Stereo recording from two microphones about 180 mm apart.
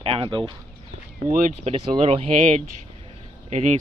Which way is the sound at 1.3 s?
45° right (ahead or behind).